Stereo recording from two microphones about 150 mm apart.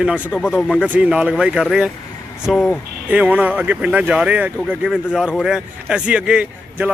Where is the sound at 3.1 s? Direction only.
10° right (ahead or behind).